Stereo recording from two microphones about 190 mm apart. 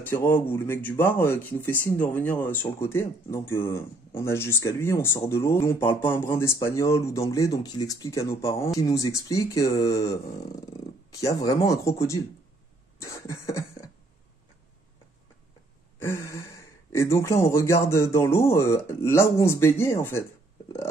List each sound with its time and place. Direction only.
0.0 s speech: 10° left (ahead or behind)
13.0 s speech: 15° left (ahead or behind)
16.0 s speech: 15° left (ahead or behind)